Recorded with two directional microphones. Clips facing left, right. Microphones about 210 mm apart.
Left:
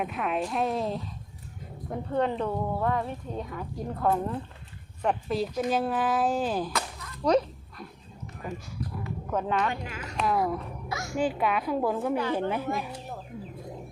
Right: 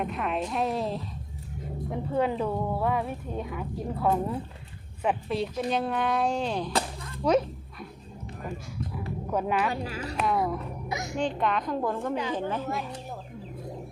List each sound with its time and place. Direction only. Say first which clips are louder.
0.0 s speech: even; centre (ahead or behind)
6.7 s whip: right 4 dB; 30° right (ahead or behind)
7.3 s speech: even; 5° right (ahead or behind)
9.3 s speech: right 1 dB; 10° right (ahead or behind)
9.8 s a woman's voice: right 5 dB; 35° right (ahead or behind)
10.2 s speech: even; centre (ahead or behind)
10.8 s speech: right 1 dB; 20° right (ahead or behind)
11.2 s a woman's voice: left 1 dB; 5° left (ahead or behind)